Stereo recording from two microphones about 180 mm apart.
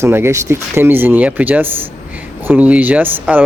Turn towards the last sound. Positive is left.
turn(degrees=-10)  # may be behind; listen again after turning